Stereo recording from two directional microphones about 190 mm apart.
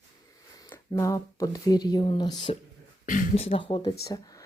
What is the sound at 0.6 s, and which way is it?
Speech, 10° left (ahead or behind).